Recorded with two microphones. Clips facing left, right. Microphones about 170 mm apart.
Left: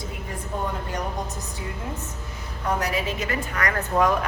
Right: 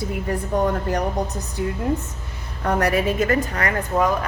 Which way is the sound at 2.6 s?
60° right (ahead or behind).